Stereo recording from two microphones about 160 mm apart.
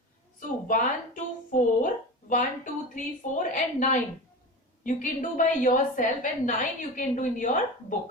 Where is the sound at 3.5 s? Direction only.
50° left (ahead or behind).